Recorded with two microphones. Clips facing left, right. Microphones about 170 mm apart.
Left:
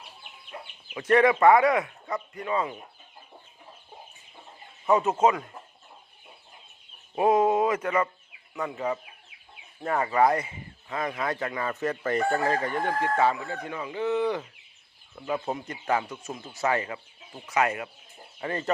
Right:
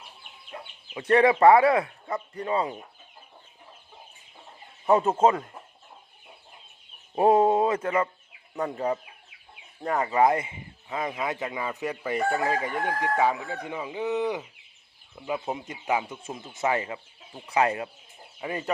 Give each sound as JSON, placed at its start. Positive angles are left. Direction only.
{"t": 0.9, "sound": "speech", "side_deg": -30}
{"t": 4.9, "sound": "speech", "side_deg": -30}
{"t": 7.2, "sound": "speech", "side_deg": -35}
{"t": 9.8, "sound": "speech", "side_deg": -20}
{"t": 15.4, "sound": "speech", "side_deg": -20}
{"t": 18.3, "sound": "speech", "side_deg": -10}